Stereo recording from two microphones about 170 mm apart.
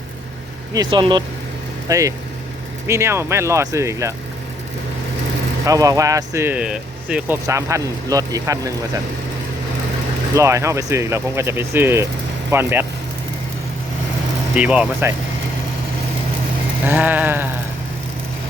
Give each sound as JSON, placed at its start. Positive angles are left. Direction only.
{"t": 0.7, "sound": "speech", "side_deg": -25}
{"t": 5.6, "sound": "speech", "side_deg": -20}
{"t": 7.4, "sound": "speech", "side_deg": -20}
{"t": 10.3, "sound": "speech", "side_deg": -15}
{"t": 14.5, "sound": "speech", "side_deg": -5}
{"t": 16.8, "sound": "speech", "side_deg": -10}